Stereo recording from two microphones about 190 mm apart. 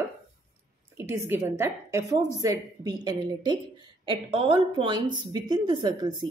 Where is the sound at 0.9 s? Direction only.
15° right (ahead or behind).